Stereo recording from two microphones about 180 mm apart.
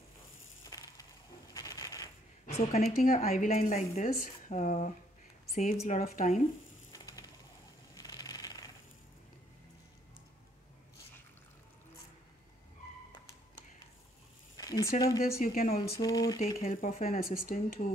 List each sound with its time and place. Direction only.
0.7 s a sound: 20° left (ahead or behind)
2.4 s a woman's voice: 35° left (ahead or behind)
6.9 s a sound: 20° left (ahead or behind)
14.6 s speech: 20° left (ahead or behind)
15.2 s speech: 55° left (ahead or behind)
15.9 s speech: 20° left (ahead or behind)
16.6 s speech: 40° left (ahead or behind)
17.2 s speech: 55° left (ahead or behind)